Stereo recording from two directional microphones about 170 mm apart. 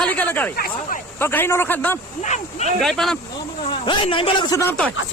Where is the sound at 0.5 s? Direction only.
65° left (ahead or behind).